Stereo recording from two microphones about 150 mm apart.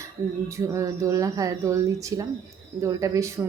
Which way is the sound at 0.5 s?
20° right (ahead or behind).